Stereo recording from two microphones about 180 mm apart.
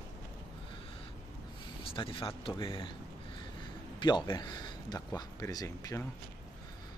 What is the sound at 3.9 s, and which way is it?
Speech, 25° left (ahead or behind).